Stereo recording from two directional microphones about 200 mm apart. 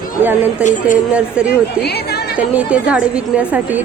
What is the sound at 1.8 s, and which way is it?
Chatter, 55° left (ahead or behind).